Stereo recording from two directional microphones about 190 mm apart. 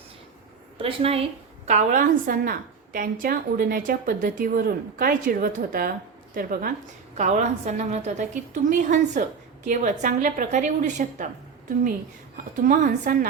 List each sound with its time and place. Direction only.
0.8 s a woman's voice: 30° right (ahead or behind); by 6.7 s 50° right (ahead or behind)
7.2 s a woman's voice: 40° right (ahead or behind)
12.6 s a woman's voice: 45° right (ahead or behind)